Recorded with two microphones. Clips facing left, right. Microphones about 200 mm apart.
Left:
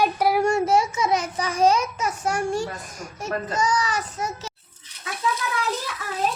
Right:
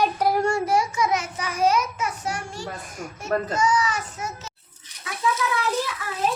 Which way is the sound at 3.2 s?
35° left (ahead or behind).